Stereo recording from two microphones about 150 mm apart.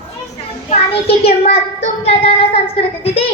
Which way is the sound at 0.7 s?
40° left (ahead or behind).